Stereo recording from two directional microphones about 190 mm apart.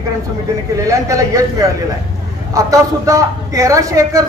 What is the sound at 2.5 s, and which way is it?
A man's voice, 15° right (ahead or behind).